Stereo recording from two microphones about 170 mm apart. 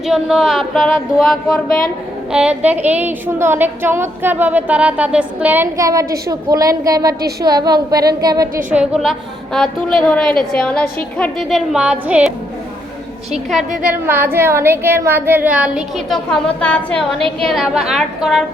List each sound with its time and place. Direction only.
0.0 s a woman's voice: 5° right (ahead or behind)
2.3 s a sound: 5° right (ahead or behind)
7.4 s a woman's voice: 25° right (ahead or behind)
8.7 s a woman's voice: 5° right (ahead or behind)
13.3 s a woman's voice: centre (ahead or behind)
14.1 s a sound: 15° right (ahead or behind)
16.6 s a woman's voice: 5° left (ahead or behind)